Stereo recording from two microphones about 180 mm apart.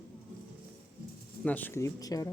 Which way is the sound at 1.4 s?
10° left (ahead or behind).